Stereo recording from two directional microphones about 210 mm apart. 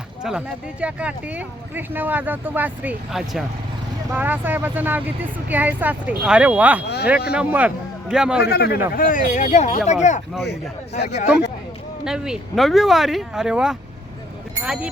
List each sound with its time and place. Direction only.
0.2 s a man's voice: 5° right (ahead or behind)
8.4 s speech: 50° left (ahead or behind)
9.0 s speech: 40° left (ahead or behind)
10.4 s speech: 55° left (ahead or behind)
12.0 s speech: 5° right (ahead or behind)